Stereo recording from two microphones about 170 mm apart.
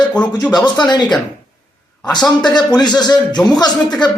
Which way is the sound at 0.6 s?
25° left (ahead or behind).